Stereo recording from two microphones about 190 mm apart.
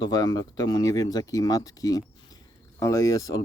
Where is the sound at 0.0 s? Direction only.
20° left (ahead or behind).